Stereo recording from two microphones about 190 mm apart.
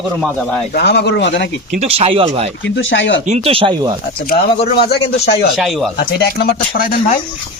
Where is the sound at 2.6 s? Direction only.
70° left (ahead or behind).